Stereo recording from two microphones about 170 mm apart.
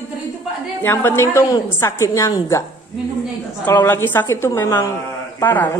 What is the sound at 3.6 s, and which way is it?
A woman's voice, 15° left (ahead or behind).